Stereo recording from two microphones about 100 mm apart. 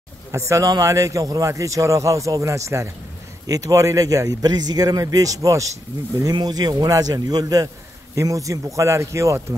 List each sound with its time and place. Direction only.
0.3 s a man's voice: 30° right (ahead or behind)
6.3 s a man's voice: 45° right (ahead or behind)